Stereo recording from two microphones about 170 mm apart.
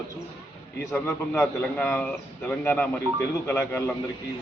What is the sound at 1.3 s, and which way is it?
A man's voice, 10° left (ahead or behind).